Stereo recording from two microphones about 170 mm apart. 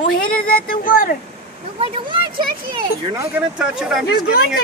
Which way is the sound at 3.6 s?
5° right (ahead or behind).